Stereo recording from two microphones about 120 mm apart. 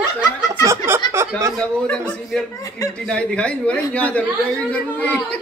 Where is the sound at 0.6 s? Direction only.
20° right (ahead or behind).